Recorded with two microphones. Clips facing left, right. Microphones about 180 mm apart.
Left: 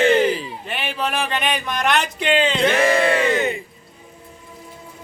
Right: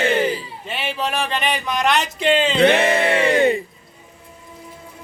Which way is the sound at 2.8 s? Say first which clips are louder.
Left 1 dB; 25° right (ahead or behind).